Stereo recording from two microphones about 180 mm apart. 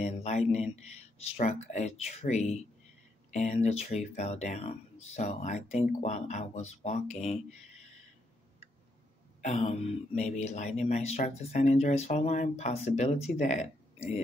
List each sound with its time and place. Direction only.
0.0 s speech: 40° left (ahead or behind)
9.4 s speech: 40° left (ahead or behind)